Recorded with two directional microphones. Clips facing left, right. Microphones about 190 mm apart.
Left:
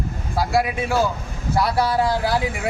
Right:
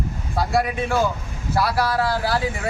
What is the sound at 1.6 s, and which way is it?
Speech, 20° left (ahead or behind).